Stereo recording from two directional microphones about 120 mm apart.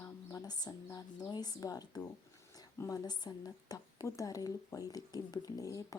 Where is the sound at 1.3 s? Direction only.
35° left (ahead or behind).